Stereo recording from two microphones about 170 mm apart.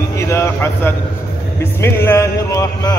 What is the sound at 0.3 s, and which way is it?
Speech, 15° left (ahead or behind).